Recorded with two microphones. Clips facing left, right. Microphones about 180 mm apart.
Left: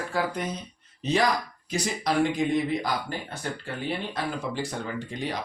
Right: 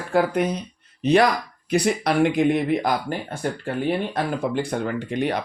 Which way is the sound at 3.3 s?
50° right (ahead or behind).